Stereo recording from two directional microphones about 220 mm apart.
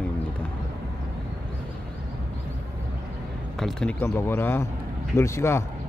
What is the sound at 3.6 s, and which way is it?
Speech, centre (ahead or behind).